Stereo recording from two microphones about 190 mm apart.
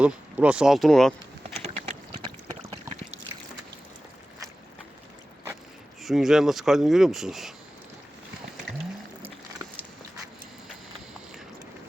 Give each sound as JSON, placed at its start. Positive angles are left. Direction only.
{"t": 0.0, "sound": "speech", "side_deg": -5}
{"t": 1.5, "sound": "a sound", "side_deg": -30}
{"t": 6.0, "sound": "speech", "side_deg": 0}